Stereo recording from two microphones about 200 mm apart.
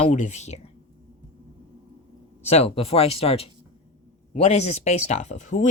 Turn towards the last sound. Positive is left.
turn(degrees=35)  # may be behind; listen again after turning